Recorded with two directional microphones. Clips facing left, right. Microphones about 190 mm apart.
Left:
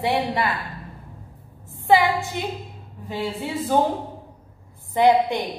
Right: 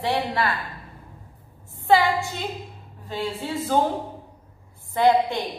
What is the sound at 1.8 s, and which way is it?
Speech, 15° left (ahead or behind).